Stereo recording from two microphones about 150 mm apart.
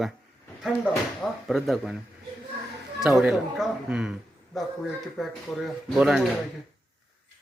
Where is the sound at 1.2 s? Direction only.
Centre (ahead or behind).